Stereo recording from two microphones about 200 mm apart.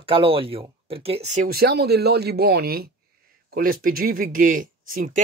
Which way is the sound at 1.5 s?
50° right (ahead or behind).